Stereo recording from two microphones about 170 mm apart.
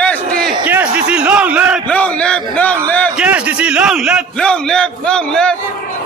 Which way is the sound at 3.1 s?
10° right (ahead or behind).